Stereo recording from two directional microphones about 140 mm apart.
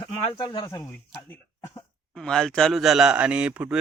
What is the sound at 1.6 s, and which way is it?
Cough, 25° left (ahead or behind).